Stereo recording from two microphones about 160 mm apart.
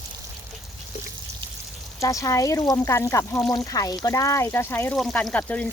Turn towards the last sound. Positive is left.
turn(degrees=10)  # may be behind; listen again after turning